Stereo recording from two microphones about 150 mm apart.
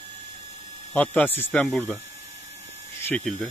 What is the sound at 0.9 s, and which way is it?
Speech, 10° left (ahead or behind).